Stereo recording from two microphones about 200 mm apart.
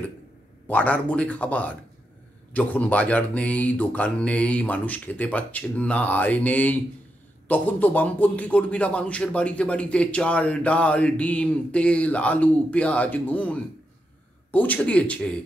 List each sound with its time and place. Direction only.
0.7 s speech: 10° left (ahead or behind)